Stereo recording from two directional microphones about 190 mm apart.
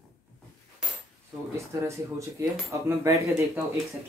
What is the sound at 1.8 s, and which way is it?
Speech, 15° right (ahead or behind).